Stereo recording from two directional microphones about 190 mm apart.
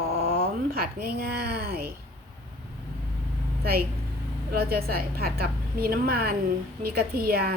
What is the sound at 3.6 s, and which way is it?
A woman's voice, 55° right (ahead or behind).